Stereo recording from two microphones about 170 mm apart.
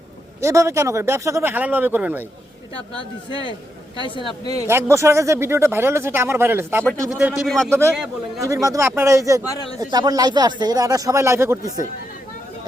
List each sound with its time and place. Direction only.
0.4 s speech: 20° right (ahead or behind)
4.2 s speech: 35° right (ahead or behind)
4.6 s speech: 15° right (ahead or behind)
7.4 s a man's voice: 5° left (ahead or behind)
7.7 s speech: 15° right (ahead or behind)